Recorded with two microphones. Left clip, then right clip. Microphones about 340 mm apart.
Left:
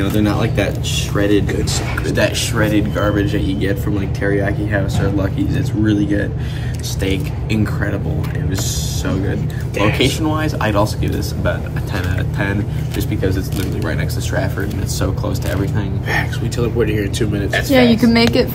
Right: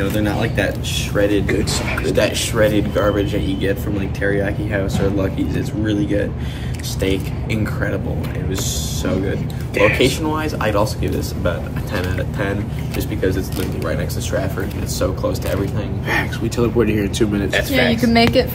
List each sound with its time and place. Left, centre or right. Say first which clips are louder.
0.3 s speech: left 1 dB; centre
7.6 s speech: right 2 dB; centre
9.9 s speech: even; centre
13.8 s speech: even; centre
16.1 s speech: even; centre
17.6 s speech: left 8 dB; centre